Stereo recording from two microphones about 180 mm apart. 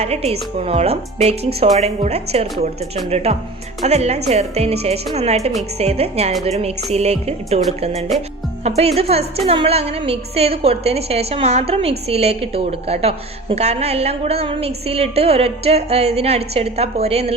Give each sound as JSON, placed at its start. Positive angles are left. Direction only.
{"t": 0.0, "sound": "a woman's voice", "side_deg": -35}